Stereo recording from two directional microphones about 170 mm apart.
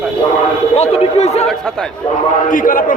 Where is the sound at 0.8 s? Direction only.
40° left (ahead or behind).